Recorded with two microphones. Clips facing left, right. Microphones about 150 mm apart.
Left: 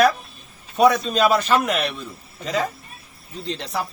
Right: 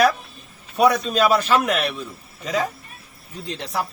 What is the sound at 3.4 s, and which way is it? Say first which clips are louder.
Speech: left 1 dB; 5° right (ahead or behind).